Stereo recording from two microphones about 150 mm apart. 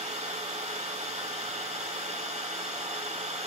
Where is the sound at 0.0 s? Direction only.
45° right (ahead or behind).